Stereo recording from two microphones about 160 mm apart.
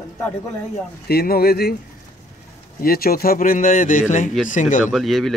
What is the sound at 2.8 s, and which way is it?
Speech, 70° left (ahead or behind).